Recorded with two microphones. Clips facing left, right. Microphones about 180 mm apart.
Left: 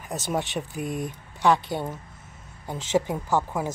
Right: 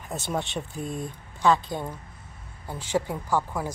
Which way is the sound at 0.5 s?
15° left (ahead or behind).